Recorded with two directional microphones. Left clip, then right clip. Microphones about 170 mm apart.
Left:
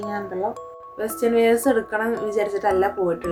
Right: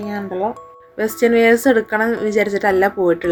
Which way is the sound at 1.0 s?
35° right (ahead or behind).